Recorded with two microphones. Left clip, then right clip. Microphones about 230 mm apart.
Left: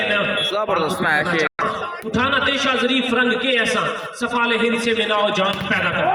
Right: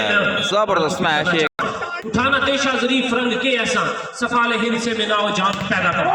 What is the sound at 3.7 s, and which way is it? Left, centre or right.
A man's voice, centre.